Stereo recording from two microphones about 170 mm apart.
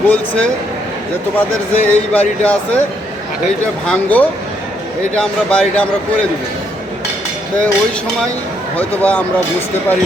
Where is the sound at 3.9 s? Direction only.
10° left (ahead or behind).